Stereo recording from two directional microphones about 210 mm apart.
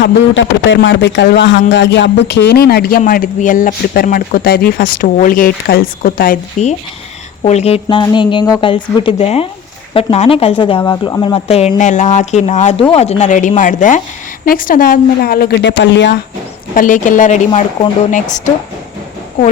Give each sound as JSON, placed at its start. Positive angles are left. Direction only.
{"t": 0.0, "sound": "a woman's voice", "side_deg": 60}
{"t": 16.7, "sound": "speech", "side_deg": 40}